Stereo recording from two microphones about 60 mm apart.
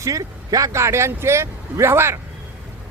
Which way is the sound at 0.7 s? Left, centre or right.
Right.